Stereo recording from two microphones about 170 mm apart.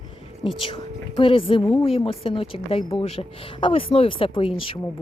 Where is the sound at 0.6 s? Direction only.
30° left (ahead or behind).